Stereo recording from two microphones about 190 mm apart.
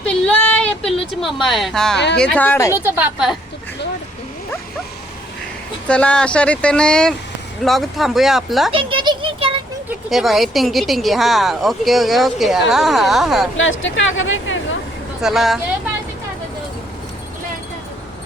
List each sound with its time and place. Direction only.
0.0 s a sound: 5° left (ahead or behind)
1.2 s speech: centre (ahead or behind)
2.7 s a woman's voice: 5° right (ahead or behind)
5.9 s speech: 5° left (ahead or behind)
8.7 s a child's voice: 25° right (ahead or behind)
10.1 s speech: centre (ahead or behind)
13.6 s speech: 85° left
15.2 s speech: centre (ahead or behind)